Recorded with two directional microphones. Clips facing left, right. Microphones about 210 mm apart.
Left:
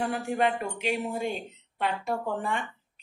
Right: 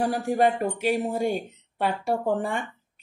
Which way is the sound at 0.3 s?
40° right (ahead or behind).